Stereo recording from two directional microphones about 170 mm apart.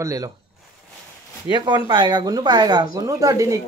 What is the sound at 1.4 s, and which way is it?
Speech, 25° right (ahead or behind).